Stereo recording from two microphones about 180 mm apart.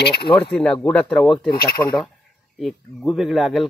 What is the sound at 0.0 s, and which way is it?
Speech, 65° left (ahead or behind).